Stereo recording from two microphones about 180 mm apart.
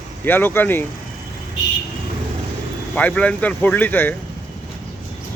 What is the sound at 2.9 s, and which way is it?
Speech, 5° left (ahead or behind).